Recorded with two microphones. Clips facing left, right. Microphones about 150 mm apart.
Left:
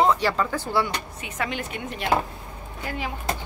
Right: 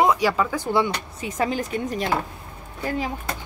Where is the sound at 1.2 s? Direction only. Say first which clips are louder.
Right 7 dB; 35° right (ahead or behind).